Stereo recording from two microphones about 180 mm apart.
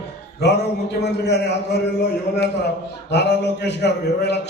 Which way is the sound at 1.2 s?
70° left (ahead or behind).